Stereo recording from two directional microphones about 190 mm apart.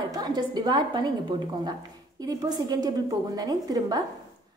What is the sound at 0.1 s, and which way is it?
A woman's voice, 20° right (ahead or behind).